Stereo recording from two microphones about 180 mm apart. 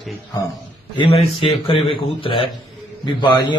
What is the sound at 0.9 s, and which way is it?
A man's voice, 30° left (ahead or behind).